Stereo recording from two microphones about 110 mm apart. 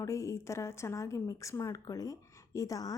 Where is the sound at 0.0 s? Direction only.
30° left (ahead or behind).